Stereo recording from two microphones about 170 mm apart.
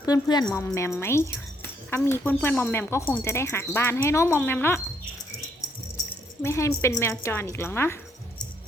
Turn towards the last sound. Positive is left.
turn(degrees=15)  # may be behind; listen again after turning